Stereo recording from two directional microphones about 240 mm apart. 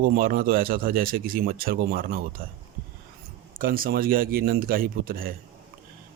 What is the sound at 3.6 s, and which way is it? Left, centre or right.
Speech, right.